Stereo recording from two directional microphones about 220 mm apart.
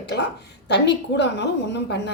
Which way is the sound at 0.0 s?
50° left (ahead or behind).